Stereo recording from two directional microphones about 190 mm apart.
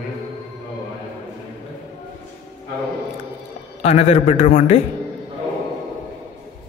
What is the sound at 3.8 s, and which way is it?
A man's voice, 35° left (ahead or behind).